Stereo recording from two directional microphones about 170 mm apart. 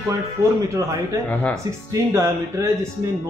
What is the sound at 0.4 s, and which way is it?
Speech, 15° right (ahead or behind).